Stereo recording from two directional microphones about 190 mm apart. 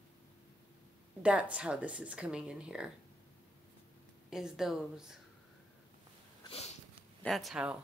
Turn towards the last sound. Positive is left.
turn(degrees=-5)  # may be behind; listen again after turning